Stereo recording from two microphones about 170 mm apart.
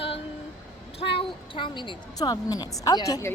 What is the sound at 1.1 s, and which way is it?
A woman's voice, 30° left (ahead or behind).